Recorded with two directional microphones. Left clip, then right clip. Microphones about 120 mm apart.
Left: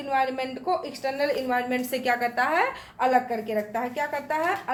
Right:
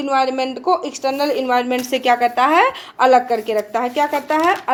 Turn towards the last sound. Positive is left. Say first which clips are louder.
# right 10 dB
turn(degrees=-55)  # may be behind; listen again after turning